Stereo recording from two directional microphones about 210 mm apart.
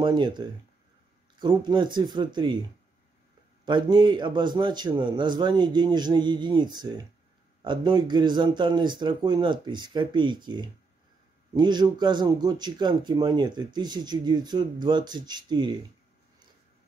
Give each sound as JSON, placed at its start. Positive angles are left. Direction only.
{"t": 0.0, "sound": "a man's voice", "side_deg": -20}
{"t": 3.6, "sound": "a man's voice", "side_deg": -20}